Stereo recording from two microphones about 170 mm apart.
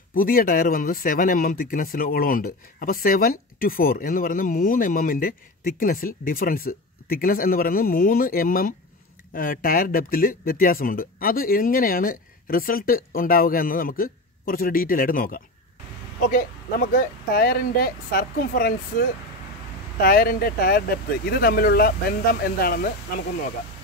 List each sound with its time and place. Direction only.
0.1 s speech: 55° left (ahead or behind)